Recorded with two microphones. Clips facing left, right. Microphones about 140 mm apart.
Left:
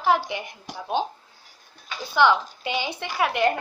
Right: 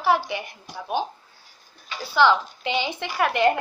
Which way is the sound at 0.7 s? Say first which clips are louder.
Left 1 dB; 85° left.